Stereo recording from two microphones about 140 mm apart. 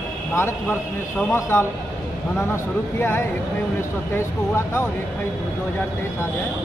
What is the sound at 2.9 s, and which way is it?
Speech, 15° left (ahead or behind).